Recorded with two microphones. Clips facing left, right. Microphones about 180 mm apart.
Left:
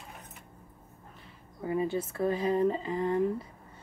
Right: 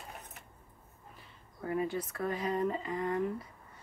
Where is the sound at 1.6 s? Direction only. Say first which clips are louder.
Left 4 dB; 25° left (ahead or behind).